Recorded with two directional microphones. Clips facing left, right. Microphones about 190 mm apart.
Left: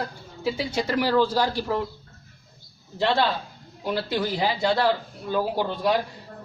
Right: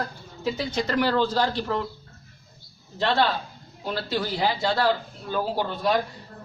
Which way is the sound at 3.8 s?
15° left (ahead or behind).